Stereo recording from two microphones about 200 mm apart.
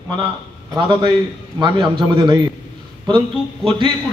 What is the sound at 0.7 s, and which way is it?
A man's voice, 25° right (ahead or behind).